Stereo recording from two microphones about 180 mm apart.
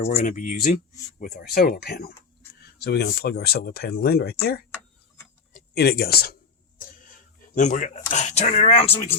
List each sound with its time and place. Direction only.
0.0 s speech: 40° left (ahead or behind)
1.2 s a man's voice: 55° left (ahead or behind)
7.5 s speech: 45° left (ahead or behind)